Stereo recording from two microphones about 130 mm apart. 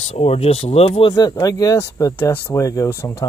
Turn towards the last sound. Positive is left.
turn(degrees=20)  # may be behind; listen again after turning